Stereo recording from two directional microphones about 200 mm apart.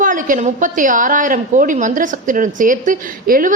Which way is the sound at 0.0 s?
40° right (ahead or behind).